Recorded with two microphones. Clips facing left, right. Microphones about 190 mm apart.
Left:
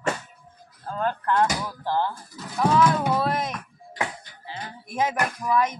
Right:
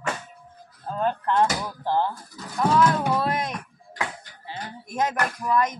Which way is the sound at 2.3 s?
Centre (ahead or behind).